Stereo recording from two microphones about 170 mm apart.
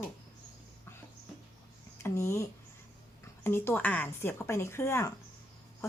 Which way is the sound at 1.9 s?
15° left (ahead or behind).